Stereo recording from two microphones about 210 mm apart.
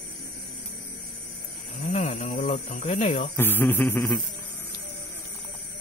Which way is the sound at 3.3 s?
10° left (ahead or behind).